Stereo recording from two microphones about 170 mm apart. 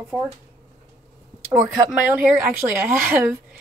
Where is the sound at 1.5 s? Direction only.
20° right (ahead or behind).